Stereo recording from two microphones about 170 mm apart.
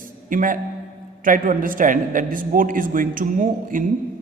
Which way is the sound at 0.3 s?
50° right (ahead or behind).